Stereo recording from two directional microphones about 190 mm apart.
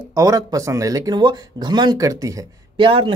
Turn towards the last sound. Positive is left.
turn(degrees=-30)  # may be behind; listen again after turning